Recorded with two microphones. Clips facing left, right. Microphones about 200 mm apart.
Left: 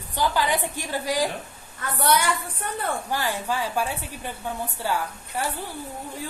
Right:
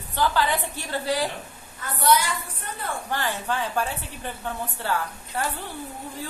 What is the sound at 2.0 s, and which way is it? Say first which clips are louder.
Speech: right 1 dB; 60° left (ahead or behind).